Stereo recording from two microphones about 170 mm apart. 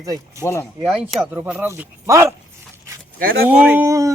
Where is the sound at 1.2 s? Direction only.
10° right (ahead or behind).